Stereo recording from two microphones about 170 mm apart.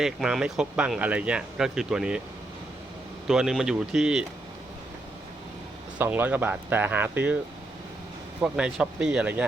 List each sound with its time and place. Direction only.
0.0 s speech: centre (ahead or behind)
3.2 s speech: 5° right (ahead or behind)
6.0 s speech: 10° right (ahead or behind)
8.4 s speech: 5° right (ahead or behind)